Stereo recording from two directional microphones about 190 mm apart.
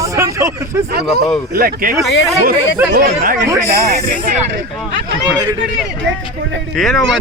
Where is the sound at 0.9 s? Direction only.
55° right (ahead or behind).